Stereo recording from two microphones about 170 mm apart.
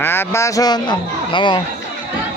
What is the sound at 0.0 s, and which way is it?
Speech, 15° left (ahead or behind).